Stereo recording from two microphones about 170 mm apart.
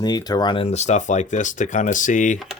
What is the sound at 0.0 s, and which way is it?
Speech, 25° left (ahead or behind).